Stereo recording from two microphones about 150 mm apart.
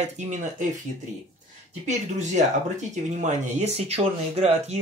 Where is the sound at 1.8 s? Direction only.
55° right (ahead or behind).